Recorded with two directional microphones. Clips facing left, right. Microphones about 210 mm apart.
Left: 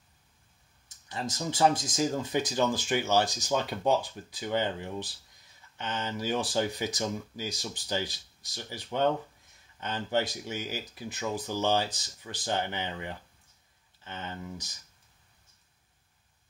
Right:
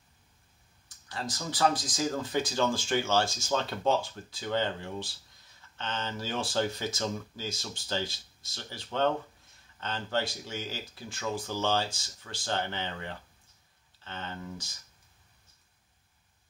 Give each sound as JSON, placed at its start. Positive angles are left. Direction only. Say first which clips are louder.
{"t": 1.0, "sound": "speech", "louder": "left 3 dB", "side_deg": 20}